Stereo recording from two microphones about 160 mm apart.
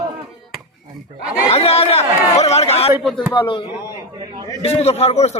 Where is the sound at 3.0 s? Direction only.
5° right (ahead or behind).